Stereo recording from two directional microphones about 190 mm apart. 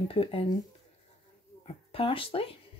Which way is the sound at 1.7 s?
30° left (ahead or behind).